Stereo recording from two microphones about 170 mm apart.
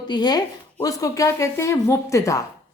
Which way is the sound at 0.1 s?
25° left (ahead or behind).